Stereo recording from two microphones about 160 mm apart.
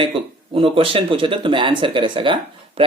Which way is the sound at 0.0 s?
35° right (ahead or behind).